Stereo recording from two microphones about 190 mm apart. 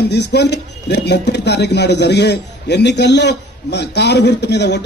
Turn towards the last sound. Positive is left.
turn(degrees=60)  # may be behind; listen again after turning